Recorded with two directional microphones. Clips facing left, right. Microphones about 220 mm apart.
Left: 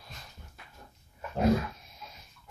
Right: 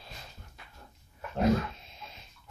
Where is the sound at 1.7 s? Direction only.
25° right (ahead or behind).